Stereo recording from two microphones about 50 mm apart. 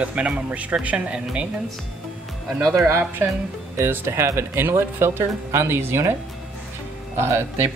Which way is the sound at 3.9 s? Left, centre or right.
Right.